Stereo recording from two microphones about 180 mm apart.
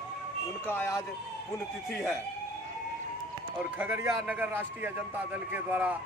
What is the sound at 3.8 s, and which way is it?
A man's voice, 15° right (ahead or behind).